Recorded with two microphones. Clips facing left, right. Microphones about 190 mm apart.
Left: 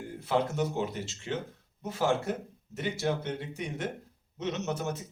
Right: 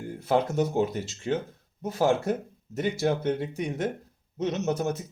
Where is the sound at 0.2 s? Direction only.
40° right (ahead or behind).